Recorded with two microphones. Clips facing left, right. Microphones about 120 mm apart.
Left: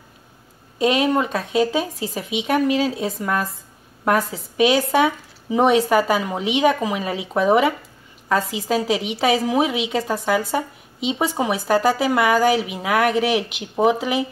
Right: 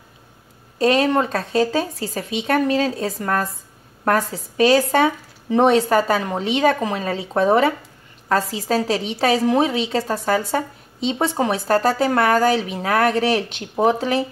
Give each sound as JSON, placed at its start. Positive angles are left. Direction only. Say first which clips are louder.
{"t": 0.7, "sound": "speech", "louder": "right 1 dB", "side_deg": 5}